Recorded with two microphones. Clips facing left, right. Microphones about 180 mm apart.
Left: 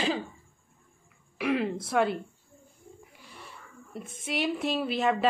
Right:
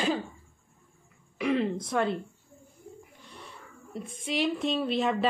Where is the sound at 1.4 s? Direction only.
5° left (ahead or behind).